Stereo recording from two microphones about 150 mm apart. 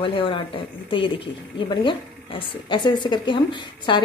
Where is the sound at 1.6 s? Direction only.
35° left (ahead or behind).